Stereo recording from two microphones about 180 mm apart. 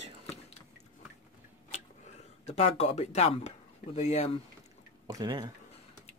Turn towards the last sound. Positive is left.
turn(degrees=-20)  # may be behind; listen again after turning